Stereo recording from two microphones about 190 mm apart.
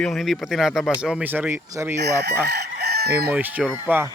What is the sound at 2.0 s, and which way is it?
Chicken, 60° right (ahead or behind).